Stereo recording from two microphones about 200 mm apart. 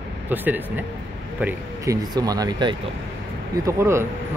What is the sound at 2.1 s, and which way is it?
Speech, 20° right (ahead or behind).